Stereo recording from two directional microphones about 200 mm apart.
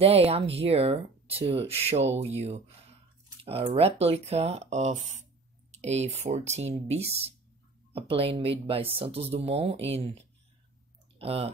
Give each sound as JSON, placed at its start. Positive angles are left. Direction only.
{"t": 0.0, "sound": "speech", "side_deg": -30}
{"t": 11.1, "sound": "speech", "side_deg": -30}